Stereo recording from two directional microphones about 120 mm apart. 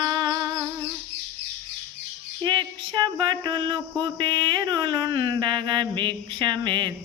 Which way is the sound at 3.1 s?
40° right (ahead or behind).